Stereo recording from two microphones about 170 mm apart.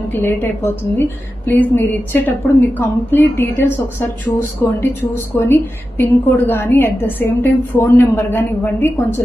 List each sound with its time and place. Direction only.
0.1 s a woman's voice: 15° left (ahead or behind)